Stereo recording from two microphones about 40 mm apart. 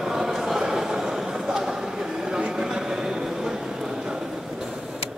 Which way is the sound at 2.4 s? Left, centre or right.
Right.